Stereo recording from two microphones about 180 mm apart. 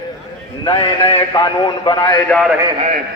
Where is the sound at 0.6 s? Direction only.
30° left (ahead or behind).